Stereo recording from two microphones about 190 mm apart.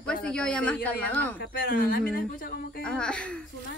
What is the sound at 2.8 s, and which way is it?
Speech, 5° left (ahead or behind).